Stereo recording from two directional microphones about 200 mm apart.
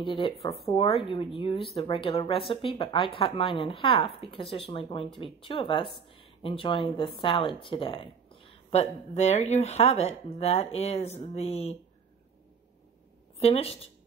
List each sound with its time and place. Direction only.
0.0 s speech: 25° left (ahead or behind)
13.4 s speech: 30° left (ahead or behind)